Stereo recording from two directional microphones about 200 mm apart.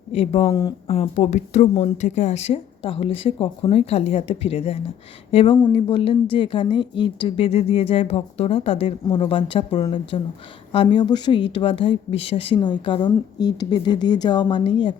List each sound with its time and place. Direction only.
0.1 s a woman's voice: 30° left (ahead or behind)